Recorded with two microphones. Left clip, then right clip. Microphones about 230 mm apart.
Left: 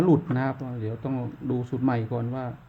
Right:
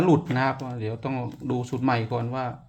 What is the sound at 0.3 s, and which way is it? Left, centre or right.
Speech, centre.